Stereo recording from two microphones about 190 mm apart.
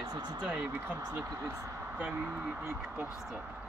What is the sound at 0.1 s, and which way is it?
Speech, 20° right (ahead or behind).